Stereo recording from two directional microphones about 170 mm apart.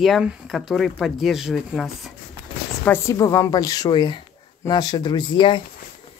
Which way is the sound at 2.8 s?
15° left (ahead or behind).